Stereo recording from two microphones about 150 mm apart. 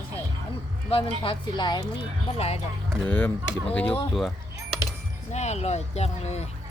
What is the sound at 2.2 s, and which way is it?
Speech, 45° left (ahead or behind).